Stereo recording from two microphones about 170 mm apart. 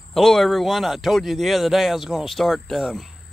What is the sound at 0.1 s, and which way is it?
Speech, centre (ahead or behind).